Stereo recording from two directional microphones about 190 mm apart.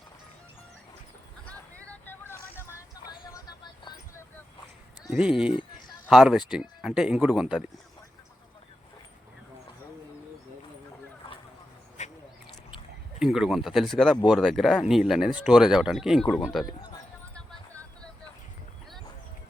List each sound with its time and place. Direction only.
1.5 s vehicle: 10° left (ahead or behind)
5.1 s speech: 5° right (ahead or behind)
12.0 s a sound: 40° left (ahead or behind)
13.1 s speech: 5° right (ahead or behind)